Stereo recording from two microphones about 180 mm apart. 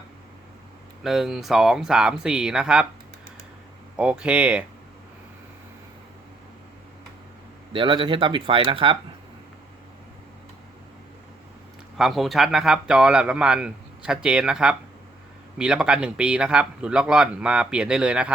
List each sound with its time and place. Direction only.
1.0 s speech: centre (ahead or behind)
3.9 s speech: 5° right (ahead or behind)
7.7 s speech: 30° right (ahead or behind)
11.9 s speech: centre (ahead or behind)